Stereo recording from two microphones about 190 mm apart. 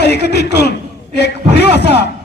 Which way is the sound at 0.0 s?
60° left (ahead or behind).